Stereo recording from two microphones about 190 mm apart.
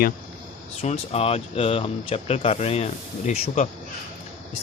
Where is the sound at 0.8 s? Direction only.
30° left (ahead or behind).